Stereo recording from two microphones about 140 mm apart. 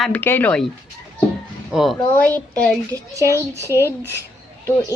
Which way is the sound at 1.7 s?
Centre (ahead or behind).